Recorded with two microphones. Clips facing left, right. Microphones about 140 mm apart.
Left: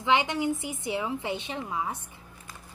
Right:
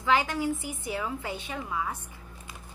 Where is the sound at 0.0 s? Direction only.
20° left (ahead or behind).